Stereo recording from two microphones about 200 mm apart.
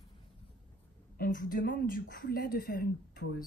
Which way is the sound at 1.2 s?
45° left (ahead or behind).